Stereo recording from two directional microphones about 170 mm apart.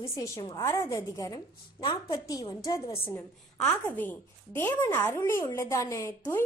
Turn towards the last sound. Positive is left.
turn(degrees=15)  # may be behind; listen again after turning